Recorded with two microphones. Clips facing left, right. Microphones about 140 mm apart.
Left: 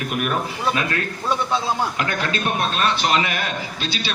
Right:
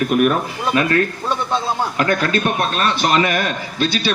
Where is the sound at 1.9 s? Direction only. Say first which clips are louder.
Right 6 dB; 45° right (ahead or behind).